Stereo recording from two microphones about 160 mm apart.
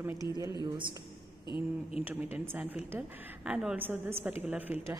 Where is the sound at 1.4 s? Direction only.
30° left (ahead or behind).